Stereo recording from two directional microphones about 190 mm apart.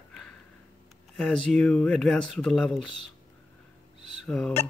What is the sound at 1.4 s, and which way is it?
Speech, 5° left (ahead or behind).